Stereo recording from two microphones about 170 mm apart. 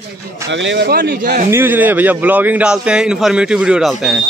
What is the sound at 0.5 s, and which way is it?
Speech, 90° right.